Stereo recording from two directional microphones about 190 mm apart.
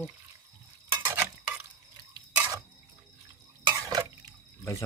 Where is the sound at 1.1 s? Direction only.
10° right (ahead or behind).